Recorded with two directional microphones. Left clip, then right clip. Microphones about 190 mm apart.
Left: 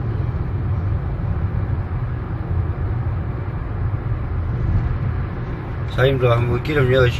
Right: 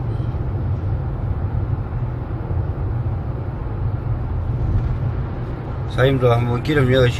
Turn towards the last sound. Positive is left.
turn(degrees=15)  # may be behind; listen again after turning